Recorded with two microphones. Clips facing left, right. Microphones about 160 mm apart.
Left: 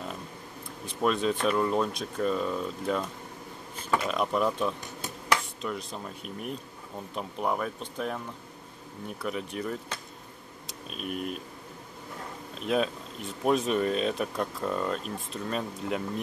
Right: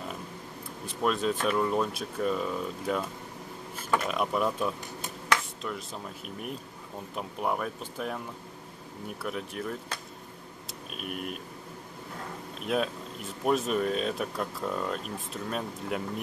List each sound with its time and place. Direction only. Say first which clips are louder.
0.8 s speech: left 1 dB; centre (ahead or behind)
4.1 s speech: left 1 dB; 5° right (ahead or behind)
9.2 s speech: left 2 dB; centre (ahead or behind)
12.6 s speech: left 2 dB; centre (ahead or behind)